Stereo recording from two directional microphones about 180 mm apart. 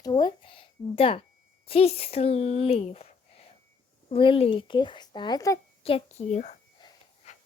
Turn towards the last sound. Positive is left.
turn(degrees=40)  # may be behind; listen again after turning